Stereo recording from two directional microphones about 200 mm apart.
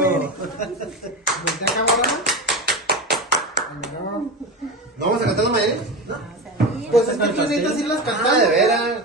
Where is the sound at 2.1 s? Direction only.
Centre (ahead or behind).